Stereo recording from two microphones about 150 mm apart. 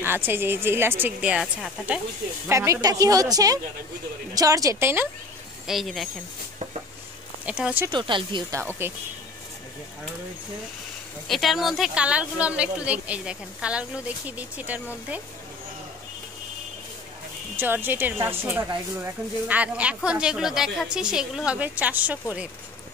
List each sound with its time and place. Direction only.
0.0 s speech: 15° right (ahead or behind)
2.4 s a woman's voice: 20° right (ahead or behind)
5.7 s speech: centre (ahead or behind)
7.4 s speech: 5° right (ahead or behind)
7.9 s speech: 35° right (ahead or behind)
8.8 s speech: 15° right (ahead or behind)
11.2 s speech: centre (ahead or behind)
17.6 s speech: 15° right (ahead or behind)